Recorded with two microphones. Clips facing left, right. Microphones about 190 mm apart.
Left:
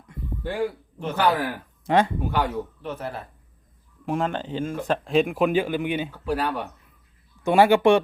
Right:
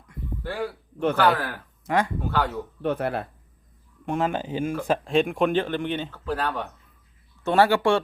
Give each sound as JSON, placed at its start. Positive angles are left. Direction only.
{"t": 0.1, "sound": "a sound", "side_deg": 20}
{"t": 1.1, "sound": "speech", "side_deg": 15}
{"t": 1.9, "sound": "speech", "side_deg": 25}
{"t": 2.2, "sound": "speech", "side_deg": 15}
{"t": 2.8, "sound": "speech", "side_deg": -65}
{"t": 4.0, "sound": "speech", "side_deg": 0}
{"t": 4.9, "sound": "speech", "side_deg": 0}